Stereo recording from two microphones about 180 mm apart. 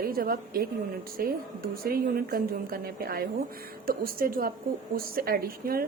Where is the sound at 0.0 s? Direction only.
55° right (ahead or behind).